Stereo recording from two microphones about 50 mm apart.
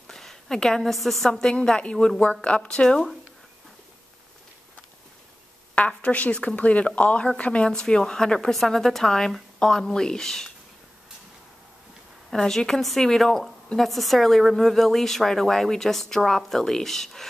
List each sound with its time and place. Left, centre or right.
0.1 s a woman's voice: centre
1.7 s speech: centre
5.8 s a woman's voice: left
12.3 s a woman's voice: centre